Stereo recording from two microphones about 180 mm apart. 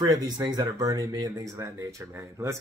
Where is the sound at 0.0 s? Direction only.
20° right (ahead or behind).